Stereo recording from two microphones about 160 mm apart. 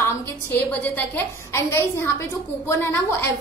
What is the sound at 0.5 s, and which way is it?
A woman's voice, 10° left (ahead or behind).